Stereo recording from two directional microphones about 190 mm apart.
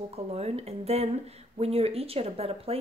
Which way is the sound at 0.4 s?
35° right (ahead or behind).